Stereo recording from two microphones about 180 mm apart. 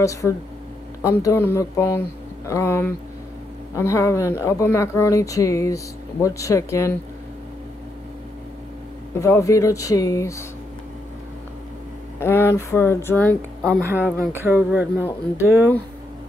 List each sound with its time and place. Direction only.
0.0 s speech: 15° left (ahead or behind)
9.2 s speech: 15° left (ahead or behind)
12.2 s speech: 15° left (ahead or behind)
13.8 s speech: 10° right (ahead or behind)